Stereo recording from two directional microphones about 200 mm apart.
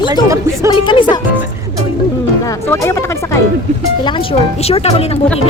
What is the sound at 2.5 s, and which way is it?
Speech, 15° left (ahead or behind).